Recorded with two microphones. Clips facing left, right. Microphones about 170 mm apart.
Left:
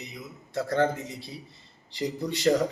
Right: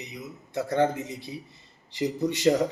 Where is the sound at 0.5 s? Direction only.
15° right (ahead or behind).